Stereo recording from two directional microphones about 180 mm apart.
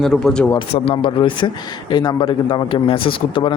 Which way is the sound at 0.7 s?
30° left (ahead or behind).